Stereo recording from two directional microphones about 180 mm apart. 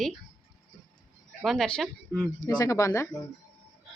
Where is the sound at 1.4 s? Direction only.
Centre (ahead or behind).